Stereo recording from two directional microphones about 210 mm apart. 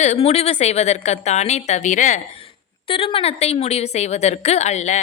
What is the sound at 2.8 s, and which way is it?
A woman's voice, 25° left (ahead or behind).